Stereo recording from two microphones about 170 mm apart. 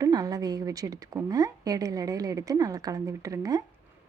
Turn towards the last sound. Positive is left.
turn(degrees=-20)  # may be behind; listen again after turning